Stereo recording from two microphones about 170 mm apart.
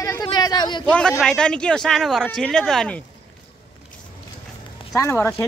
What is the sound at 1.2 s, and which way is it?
Speech, 5° left (ahead or behind).